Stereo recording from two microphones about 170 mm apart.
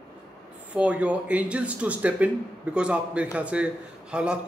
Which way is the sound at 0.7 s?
5° right (ahead or behind).